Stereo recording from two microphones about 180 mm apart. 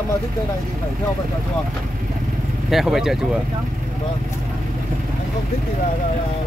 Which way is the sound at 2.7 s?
Centre (ahead or behind).